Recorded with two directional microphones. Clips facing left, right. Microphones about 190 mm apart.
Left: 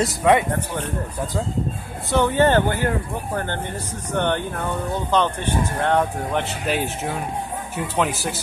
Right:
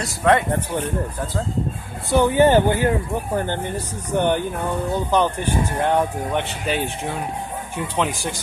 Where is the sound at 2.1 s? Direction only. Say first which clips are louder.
Right 2 dB; 15° right (ahead or behind).